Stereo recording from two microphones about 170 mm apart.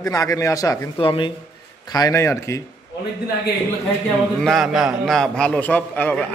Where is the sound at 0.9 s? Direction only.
30° left (ahead or behind).